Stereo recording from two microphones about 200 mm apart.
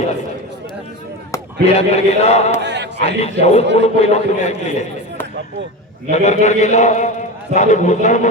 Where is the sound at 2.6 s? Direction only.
60° right (ahead or behind).